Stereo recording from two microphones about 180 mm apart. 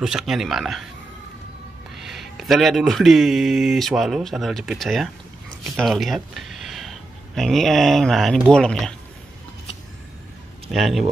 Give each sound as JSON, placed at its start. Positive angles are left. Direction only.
{"t": 0.0, "sound": "speech", "side_deg": -5}
{"t": 2.0, "sound": "speech", "side_deg": 0}
{"t": 10.7, "sound": "speech", "side_deg": 0}